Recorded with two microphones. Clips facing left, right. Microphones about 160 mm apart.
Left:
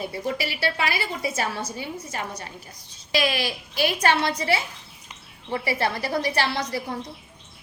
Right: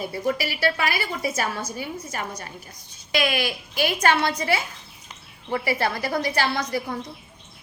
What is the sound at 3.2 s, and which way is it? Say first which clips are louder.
Speech: even; 55° right (ahead or behind).